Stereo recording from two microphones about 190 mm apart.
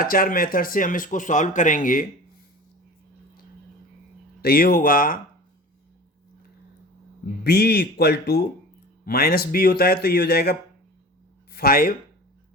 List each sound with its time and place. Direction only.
0.0 s speech: 50° left (ahead or behind)
4.4 s speech: 55° left (ahead or behind)
7.4 s a man's voice: 55° left (ahead or behind)